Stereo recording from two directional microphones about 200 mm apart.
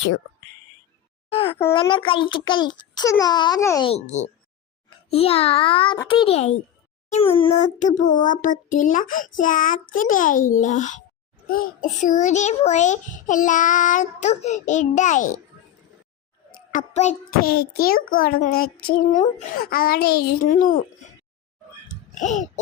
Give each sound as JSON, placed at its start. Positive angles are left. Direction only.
{"t": 1.3, "sound": "a sound", "side_deg": 30}
{"t": 1.7, "sound": "a child's voice", "side_deg": 25}
{"t": 3.8, "sound": "a child's voice", "side_deg": 35}
{"t": 16.7, "sound": "a child's voice", "side_deg": 35}
{"t": 22.1, "sound": "speech", "side_deg": 35}